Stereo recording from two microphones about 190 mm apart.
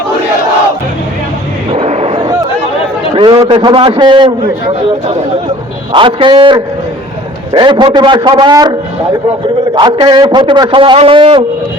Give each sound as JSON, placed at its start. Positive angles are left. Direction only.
{"t": 1.7, "sound": "a sound", "side_deg": -35}
{"t": 3.2, "sound": "a man's voice", "side_deg": -25}
{"t": 5.9, "sound": "a man's voice", "side_deg": -25}
{"t": 9.7, "sound": "a man's voice", "side_deg": -25}